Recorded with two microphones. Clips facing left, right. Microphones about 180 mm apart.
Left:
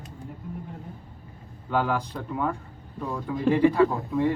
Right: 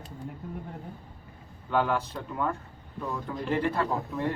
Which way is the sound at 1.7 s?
10° left (ahead or behind).